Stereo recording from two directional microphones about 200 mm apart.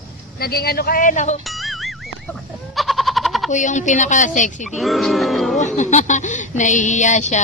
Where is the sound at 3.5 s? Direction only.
40° left (ahead or behind).